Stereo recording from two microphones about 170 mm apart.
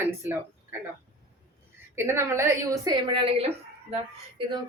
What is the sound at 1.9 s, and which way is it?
Speech, 15° right (ahead or behind).